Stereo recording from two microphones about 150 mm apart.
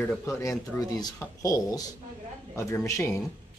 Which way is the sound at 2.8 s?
20° left (ahead or behind).